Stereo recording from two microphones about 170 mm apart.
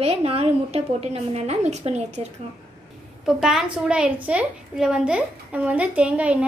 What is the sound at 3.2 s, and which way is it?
A woman's voice, 5° right (ahead or behind).